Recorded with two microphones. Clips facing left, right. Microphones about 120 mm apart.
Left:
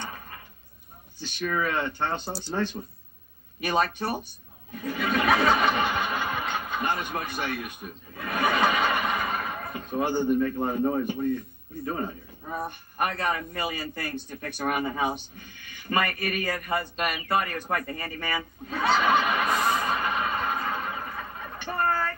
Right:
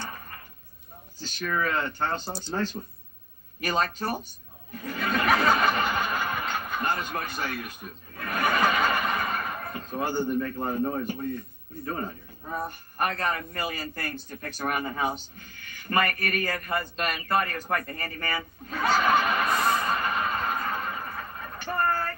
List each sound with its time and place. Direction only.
1.4 s a man's voice: 15° left (ahead or behind)
4.8 s snicker: 15° left (ahead or behind)
8.2 s chuckle: 15° left (ahead or behind)
11.8 s a man's voice: 15° left (ahead or behind)
18.8 s snicker: 20° left (ahead or behind)
19.5 s a sound: centre (ahead or behind)
19.9 s a sound: 15° left (ahead or behind)